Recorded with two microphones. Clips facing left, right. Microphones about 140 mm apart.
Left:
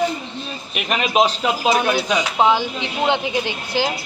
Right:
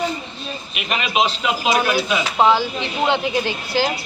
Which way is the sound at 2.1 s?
15° left (ahead or behind).